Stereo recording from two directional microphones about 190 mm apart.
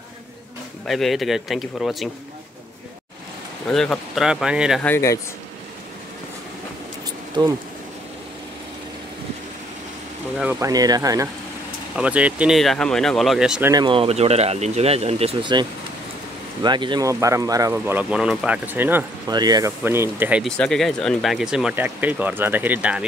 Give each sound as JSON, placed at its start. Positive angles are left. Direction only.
{"t": 0.8, "sound": "speech", "side_deg": 0}
{"t": 3.6, "sound": "speech", "side_deg": 5}
{"t": 4.8, "sound": "speech", "side_deg": 15}
{"t": 7.4, "sound": "speech", "side_deg": -25}
{"t": 10.4, "sound": "speech", "side_deg": -10}
{"t": 10.7, "sound": "speech", "side_deg": -20}
{"t": 11.9, "sound": "speech", "side_deg": -5}
{"t": 13.7, "sound": "speech", "side_deg": -25}
{"t": 16.6, "sound": "speech", "side_deg": -25}
{"t": 19.3, "sound": "speech", "side_deg": -20}